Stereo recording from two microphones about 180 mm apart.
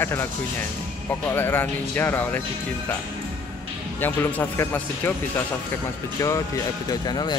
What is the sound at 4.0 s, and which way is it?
Speech, 10° left (ahead or behind).